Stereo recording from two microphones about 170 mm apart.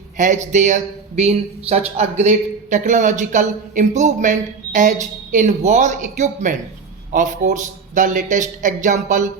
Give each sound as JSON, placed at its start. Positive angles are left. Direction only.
{"t": 0.2, "sound": "speech", "side_deg": -45}